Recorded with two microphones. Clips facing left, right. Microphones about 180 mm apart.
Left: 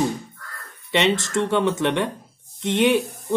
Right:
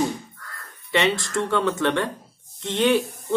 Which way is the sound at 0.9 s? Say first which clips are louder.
Left 2 dB; 20° left (ahead or behind).